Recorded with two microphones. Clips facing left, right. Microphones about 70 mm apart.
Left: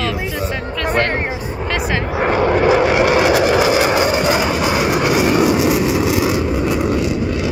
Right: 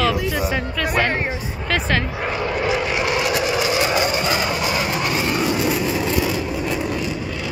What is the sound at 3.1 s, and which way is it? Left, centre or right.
Vehicle, left.